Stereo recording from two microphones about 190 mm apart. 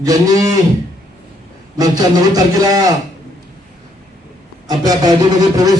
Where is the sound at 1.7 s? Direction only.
20° right (ahead or behind).